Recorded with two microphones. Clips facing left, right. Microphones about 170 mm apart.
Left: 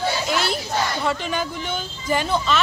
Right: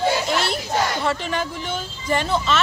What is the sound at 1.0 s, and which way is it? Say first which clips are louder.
Speech: even; centre (ahead or behind).